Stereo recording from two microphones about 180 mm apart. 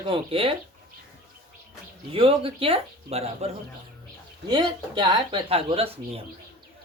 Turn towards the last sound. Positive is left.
turn(degrees=-35)  # may be behind; listen again after turning